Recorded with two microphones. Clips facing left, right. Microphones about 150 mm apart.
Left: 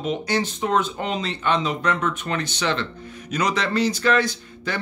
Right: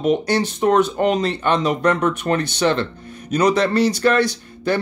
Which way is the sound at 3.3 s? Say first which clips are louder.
Right 7 dB; 35° right (ahead or behind).